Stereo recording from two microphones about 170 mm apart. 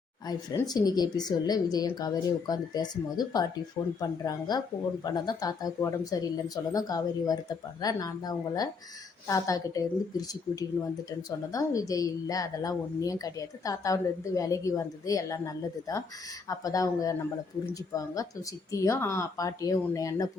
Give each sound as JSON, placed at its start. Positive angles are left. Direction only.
{"t": 0.3, "sound": "a woman's voice", "side_deg": 25}